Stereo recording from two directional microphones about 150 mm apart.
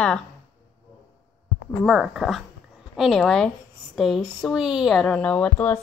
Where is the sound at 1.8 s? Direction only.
Centre (ahead or behind).